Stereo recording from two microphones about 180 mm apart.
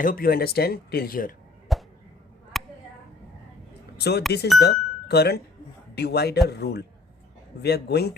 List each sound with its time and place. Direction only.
0.0 s speech: 50° left (ahead or behind)
1.7 s a sound: centre (ahead or behind)
3.9 s speech: 65° left (ahead or behind)